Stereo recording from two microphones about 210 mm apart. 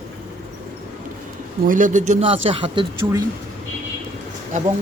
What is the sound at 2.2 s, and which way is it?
Speech, 25° right (ahead or behind).